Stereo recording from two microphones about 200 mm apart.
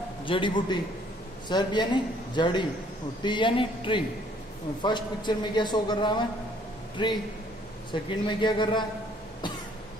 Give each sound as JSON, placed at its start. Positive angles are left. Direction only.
{"t": 0.2, "sound": "a man's voice", "side_deg": 25}